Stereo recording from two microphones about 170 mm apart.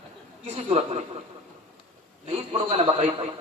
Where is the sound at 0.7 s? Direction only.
40° right (ahead or behind).